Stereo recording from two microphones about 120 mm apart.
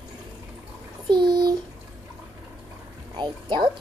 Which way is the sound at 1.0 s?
40° right (ahead or behind).